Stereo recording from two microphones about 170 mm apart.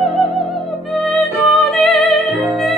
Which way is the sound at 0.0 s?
Centre (ahead or behind).